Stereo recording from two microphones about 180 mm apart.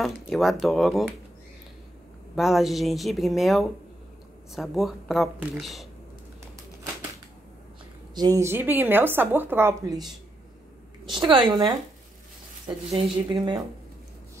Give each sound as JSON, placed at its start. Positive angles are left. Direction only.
{"t": 0.0, "sound": "speech", "side_deg": 0}
{"t": 2.3, "sound": "speech", "side_deg": 0}
{"t": 8.1, "sound": "a woman's voice", "side_deg": -20}
{"t": 11.1, "sound": "speech", "side_deg": -25}